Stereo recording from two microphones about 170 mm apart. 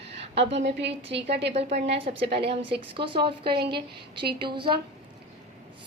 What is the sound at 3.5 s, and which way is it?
Speech, 70° right (ahead or behind).